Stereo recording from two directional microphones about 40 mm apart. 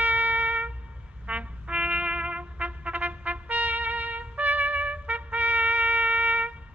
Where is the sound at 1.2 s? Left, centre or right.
Right.